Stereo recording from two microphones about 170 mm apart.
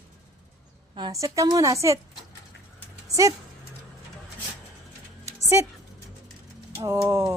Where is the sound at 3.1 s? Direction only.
20° right (ahead or behind).